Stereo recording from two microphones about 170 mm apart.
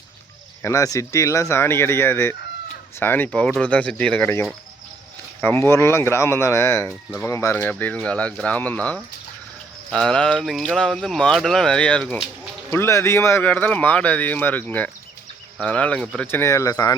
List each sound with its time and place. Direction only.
0.6 s speech: 20° left (ahead or behind)